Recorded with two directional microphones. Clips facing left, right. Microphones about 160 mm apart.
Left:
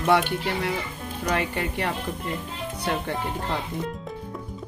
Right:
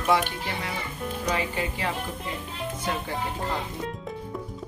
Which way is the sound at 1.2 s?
65° left (ahead or behind).